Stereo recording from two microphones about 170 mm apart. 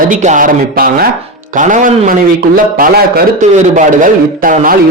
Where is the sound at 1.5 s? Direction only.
50° right (ahead or behind).